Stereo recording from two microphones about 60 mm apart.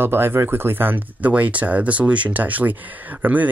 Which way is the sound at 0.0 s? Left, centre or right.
Right.